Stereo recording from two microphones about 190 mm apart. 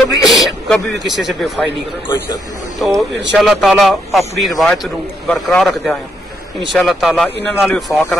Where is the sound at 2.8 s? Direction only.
Centre (ahead or behind).